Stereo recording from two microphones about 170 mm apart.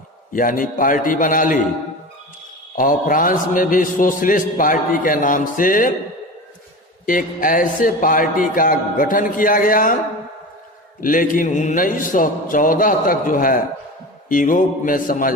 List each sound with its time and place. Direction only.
0.3 s a man's voice: 55° left (ahead or behind)
2.7 s a man's voice: 55° left (ahead or behind)
7.0 s a man's voice: 55° left (ahead or behind)
11.0 s a man's voice: 55° left (ahead or behind)